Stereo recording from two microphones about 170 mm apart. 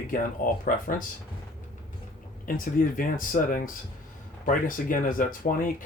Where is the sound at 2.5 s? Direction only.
55° left (ahead or behind).